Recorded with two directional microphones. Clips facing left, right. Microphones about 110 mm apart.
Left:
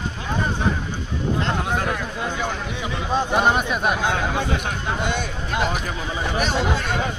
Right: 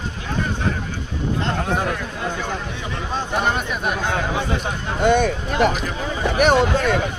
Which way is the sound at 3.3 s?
15° left (ahead or behind).